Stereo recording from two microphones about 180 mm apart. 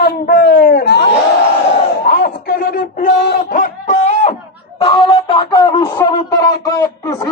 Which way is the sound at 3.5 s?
45° left (ahead or behind).